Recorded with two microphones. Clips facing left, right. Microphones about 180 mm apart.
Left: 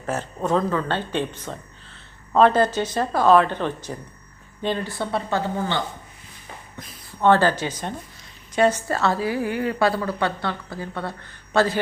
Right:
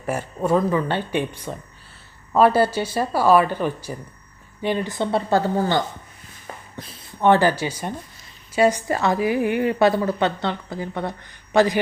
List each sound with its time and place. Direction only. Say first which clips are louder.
0.0 s a woman's voice: right 2 dB; 10° right (ahead or behind)
5.1 s a woman's voice: right 5 dB; 35° right (ahead or behind)
6.5 s a sound: right 3 dB; 50° right (ahead or behind)
7.1 s a woman's voice: right 1 dB; 15° right (ahead or behind)